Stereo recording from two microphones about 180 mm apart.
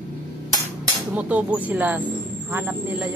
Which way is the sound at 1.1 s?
10° right (ahead or behind).